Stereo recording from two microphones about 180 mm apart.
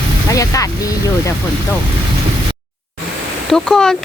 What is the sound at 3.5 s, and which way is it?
Speech, 5° left (ahead or behind).